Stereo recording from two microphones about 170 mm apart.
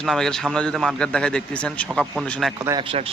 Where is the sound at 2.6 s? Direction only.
25° right (ahead or behind).